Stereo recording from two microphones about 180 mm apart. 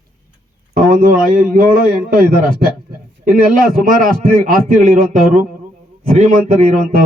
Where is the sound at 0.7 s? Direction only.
50° right (ahead or behind).